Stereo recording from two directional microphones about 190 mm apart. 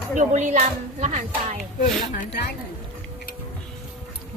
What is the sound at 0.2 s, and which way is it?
Speech, 40° right (ahead or behind).